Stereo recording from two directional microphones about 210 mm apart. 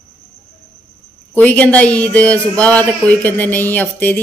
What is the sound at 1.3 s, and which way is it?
Speech, 10° left (ahead or behind).